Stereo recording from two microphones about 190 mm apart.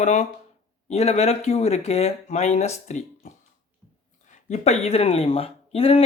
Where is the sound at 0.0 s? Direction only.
40° left (ahead or behind).